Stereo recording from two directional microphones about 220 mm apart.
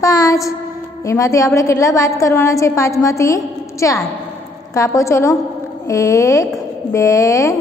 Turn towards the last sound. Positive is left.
turn(degrees=15)  # may be behind; listen again after turning